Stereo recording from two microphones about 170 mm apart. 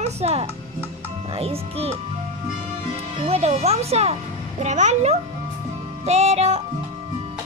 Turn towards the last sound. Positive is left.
turn(degrees=-40)  # may be behind; listen again after turning